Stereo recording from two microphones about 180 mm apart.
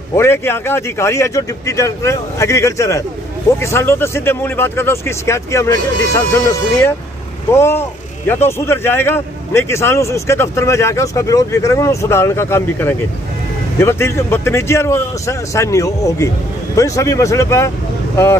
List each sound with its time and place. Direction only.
0.1 s a man's voice: 15° left (ahead or behind)